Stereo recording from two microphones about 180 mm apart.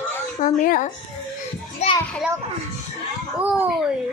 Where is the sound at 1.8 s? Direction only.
40° left (ahead or behind).